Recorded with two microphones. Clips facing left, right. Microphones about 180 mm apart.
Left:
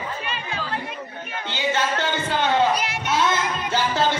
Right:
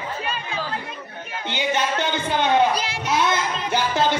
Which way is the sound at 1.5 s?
15° right (ahead or behind).